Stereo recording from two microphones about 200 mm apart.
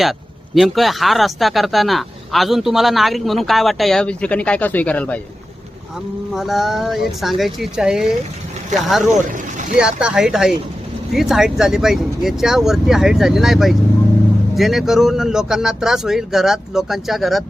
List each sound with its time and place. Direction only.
0.0 s speech: centre (ahead or behind)
6.3 s speech: centre (ahead or behind)
9.1 s vehicle: 40° right (ahead or behind)
9.8 s speech: 5° right (ahead or behind)